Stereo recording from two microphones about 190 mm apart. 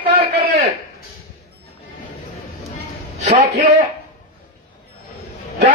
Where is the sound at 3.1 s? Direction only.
40° right (ahead or behind).